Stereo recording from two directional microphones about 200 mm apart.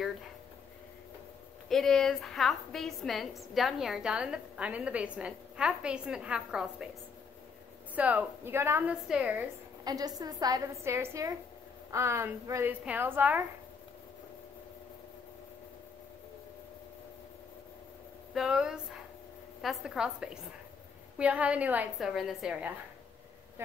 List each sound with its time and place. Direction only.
1.7 s a woman's voice: centre (ahead or behind)
7.9 s a woman's voice: 5° right (ahead or behind)
9.8 s a woman's voice: 20° right (ahead or behind)
18.3 s a woman's voice: 5° right (ahead or behind)